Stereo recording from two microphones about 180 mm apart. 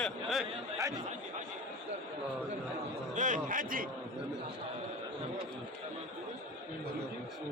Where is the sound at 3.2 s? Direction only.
45° right (ahead or behind).